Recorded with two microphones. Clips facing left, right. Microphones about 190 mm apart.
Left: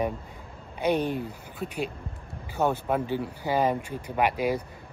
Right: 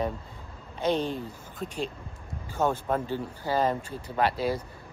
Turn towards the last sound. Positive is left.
turn(degrees=15)  # may be behind; listen again after turning